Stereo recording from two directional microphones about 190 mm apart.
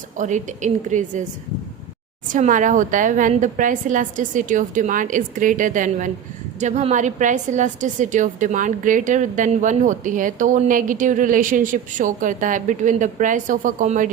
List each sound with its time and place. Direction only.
0.2 s a woman's voice: 40° right (ahead or behind)
2.2 s a woman's voice: 40° right (ahead or behind)